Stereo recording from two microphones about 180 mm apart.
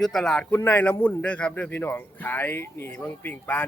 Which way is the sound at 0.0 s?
Centre (ahead or behind).